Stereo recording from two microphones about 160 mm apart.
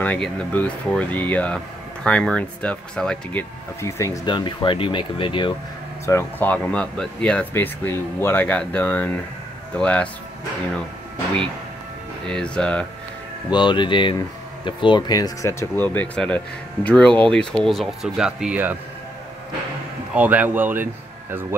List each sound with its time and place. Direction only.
0.0 s speech: 10° left (ahead or behind)
3.8 s speech: 20° left (ahead or behind)
6.0 s speech: 15° left (ahead or behind)
12.3 s speech: 5° left (ahead or behind)
13.5 s speech: 30° left (ahead or behind); by 18.8 s 10° right (ahead or behind)
20.2 s speech: 10° right (ahead or behind)